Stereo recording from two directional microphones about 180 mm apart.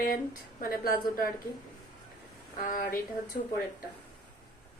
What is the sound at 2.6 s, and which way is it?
Speech, 50° left (ahead or behind).